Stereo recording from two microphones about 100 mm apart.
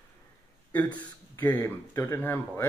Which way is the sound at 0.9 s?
20° left (ahead or behind).